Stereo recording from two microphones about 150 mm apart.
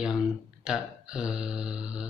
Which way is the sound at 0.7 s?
5° right (ahead or behind).